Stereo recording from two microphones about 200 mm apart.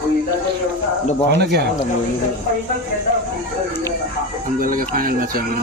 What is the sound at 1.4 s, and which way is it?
Speech, 55° right (ahead or behind).